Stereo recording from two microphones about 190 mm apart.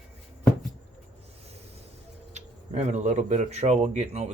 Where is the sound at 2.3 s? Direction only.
35° right (ahead or behind).